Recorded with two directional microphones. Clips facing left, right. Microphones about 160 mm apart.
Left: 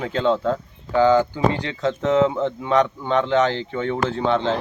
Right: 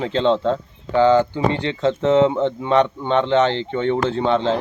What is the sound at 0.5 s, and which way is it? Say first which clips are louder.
Speech: right 2 dB; 5° left (ahead or behind).